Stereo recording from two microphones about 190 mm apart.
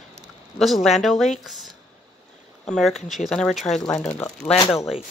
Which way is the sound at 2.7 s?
Centre (ahead or behind).